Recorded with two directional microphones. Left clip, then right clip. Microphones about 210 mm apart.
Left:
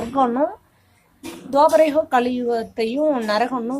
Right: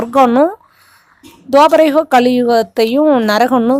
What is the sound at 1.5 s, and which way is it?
A woman's voice, 45° right (ahead or behind).